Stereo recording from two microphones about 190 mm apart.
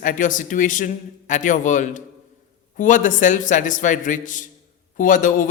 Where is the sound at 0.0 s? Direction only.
45° left (ahead or behind).